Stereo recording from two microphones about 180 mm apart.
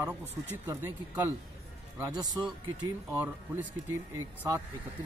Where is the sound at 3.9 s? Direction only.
15° right (ahead or behind).